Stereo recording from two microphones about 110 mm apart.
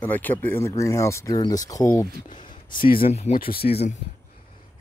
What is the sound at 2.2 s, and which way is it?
Speech, 45° left (ahead or behind).